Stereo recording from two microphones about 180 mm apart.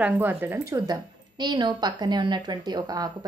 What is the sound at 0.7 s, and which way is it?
A woman's voice, 25° right (ahead or behind).